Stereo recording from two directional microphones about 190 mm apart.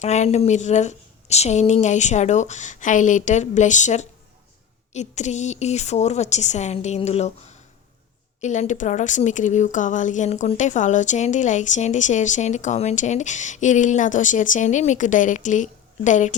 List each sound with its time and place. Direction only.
0.0 s speech: 35° left (ahead or behind)